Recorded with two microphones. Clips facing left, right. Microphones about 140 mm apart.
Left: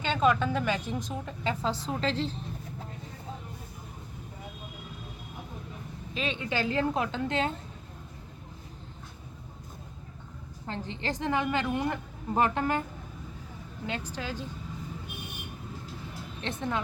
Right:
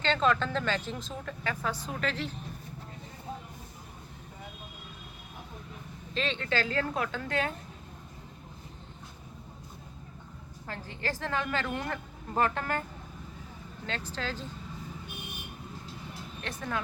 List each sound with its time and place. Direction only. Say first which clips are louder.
0.0 s a woman's voice: left 2 dB; 10° left (ahead or behind); by 2.4 s 30° left (ahead or behind)
6.1 s a woman's voice: even; 10° left (ahead or behind)
10.7 s a woman's voice: left 2 dB; 20° left (ahead or behind)
13.8 s a woman's voice: left 1 dB; 15° left (ahead or behind)
16.4 s a woman's voice: left 3 dB; 25° left (ahead or behind)